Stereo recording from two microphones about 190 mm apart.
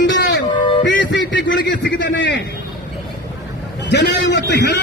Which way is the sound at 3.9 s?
65° left (ahead or behind).